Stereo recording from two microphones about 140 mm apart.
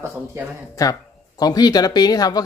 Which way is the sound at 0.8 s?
25° left (ahead or behind).